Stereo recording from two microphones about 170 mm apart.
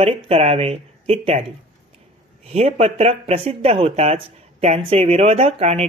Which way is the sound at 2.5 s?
40° right (ahead or behind).